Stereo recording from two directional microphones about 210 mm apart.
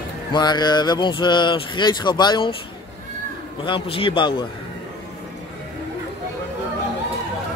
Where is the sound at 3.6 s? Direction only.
25° left (ahead or behind).